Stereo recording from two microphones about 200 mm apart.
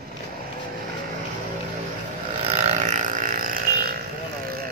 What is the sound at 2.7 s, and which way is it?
Burping, 35° right (ahead or behind).